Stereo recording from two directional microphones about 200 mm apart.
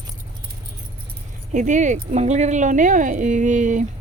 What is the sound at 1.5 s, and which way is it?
Speech, 40° right (ahead or behind).